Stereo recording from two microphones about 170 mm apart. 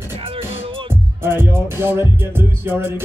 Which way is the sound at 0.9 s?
15° right (ahead or behind).